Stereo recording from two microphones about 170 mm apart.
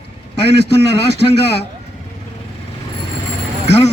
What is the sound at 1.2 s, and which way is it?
Speech, 35° left (ahead or behind).